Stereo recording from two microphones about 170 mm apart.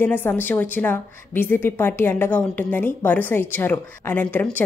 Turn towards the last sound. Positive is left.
turn(degrees=10)  # may be behind; listen again after turning